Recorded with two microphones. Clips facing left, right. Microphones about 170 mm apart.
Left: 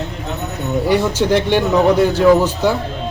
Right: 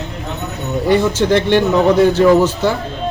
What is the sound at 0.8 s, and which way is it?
Speech, 10° left (ahead or behind).